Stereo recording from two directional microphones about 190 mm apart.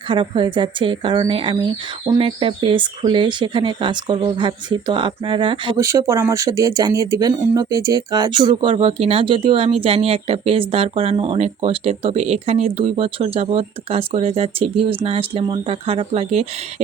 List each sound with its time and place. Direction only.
0.1 s speech: 25° right (ahead or behind)